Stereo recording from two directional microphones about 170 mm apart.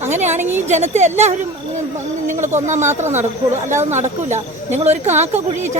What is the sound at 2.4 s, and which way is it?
A woman's voice, 45° right (ahead or behind).